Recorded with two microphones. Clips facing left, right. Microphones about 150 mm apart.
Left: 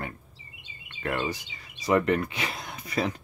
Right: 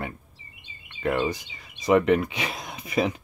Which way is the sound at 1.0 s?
5° right (ahead or behind).